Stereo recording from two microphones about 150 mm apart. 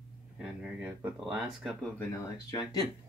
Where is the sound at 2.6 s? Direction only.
25° left (ahead or behind).